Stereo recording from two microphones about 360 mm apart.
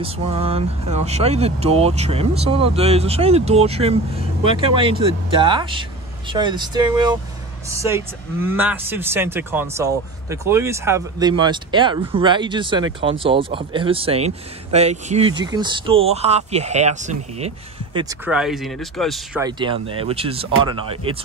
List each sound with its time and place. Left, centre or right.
0.0 s speech: centre
17.9 s speech: centre
19.4 s speech: centre